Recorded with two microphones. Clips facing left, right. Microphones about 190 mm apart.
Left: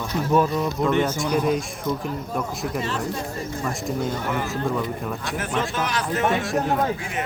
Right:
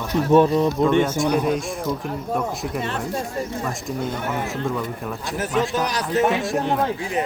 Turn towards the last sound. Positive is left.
turn(degrees=0)  # may be behind; listen again after turning